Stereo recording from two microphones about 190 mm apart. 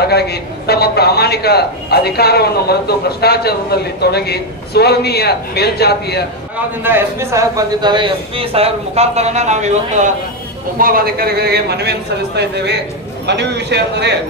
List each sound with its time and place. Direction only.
0.0 s a man's voice: 55° left (ahead or behind)
6.8 s a man's voice: 10° right (ahead or behind); by 10.1 s 40° right (ahead or behind)
10.8 s speech: 50° right (ahead or behind)
13.4 s speech: 65° right (ahead or behind)